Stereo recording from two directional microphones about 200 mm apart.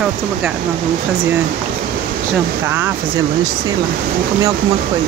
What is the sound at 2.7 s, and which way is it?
Speech, 10° right (ahead or behind).